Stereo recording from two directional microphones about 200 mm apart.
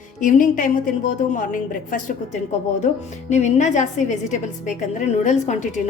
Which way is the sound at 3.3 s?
35° left (ahead or behind).